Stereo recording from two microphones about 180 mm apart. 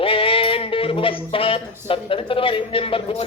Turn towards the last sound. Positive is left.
turn(degrees=30)  # may be behind; listen again after turning